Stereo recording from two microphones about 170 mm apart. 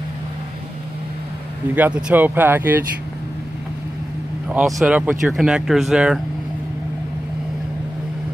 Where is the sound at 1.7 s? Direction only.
10° right (ahead or behind).